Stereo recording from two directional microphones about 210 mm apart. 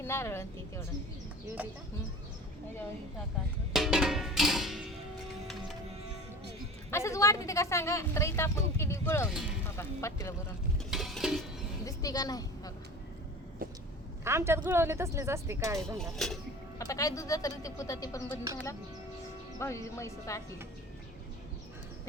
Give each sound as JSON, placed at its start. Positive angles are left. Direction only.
{"t": 0.0, "sound": "a woman's voice", "side_deg": 10}
{"t": 1.6, "sound": "speech", "side_deg": -5}
{"t": 3.7, "sound": "music", "side_deg": 0}
{"t": 6.9, "sound": "a woman's voice", "side_deg": 15}
{"t": 10.9, "sound": "a sound", "side_deg": 0}
{"t": 11.9, "sound": "speech", "side_deg": 15}
{"t": 14.3, "sound": "speech", "side_deg": -10}
{"t": 16.0, "sound": "speech", "side_deg": 0}
{"t": 16.7, "sound": "a woman's voice", "side_deg": 15}
{"t": 19.5, "sound": "a woman's voice", "side_deg": 15}